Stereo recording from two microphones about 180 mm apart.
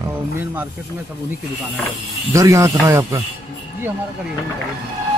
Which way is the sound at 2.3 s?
15° right (ahead or behind).